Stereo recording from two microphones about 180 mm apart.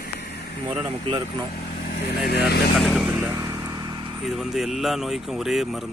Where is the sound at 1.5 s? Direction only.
55° left (ahead or behind).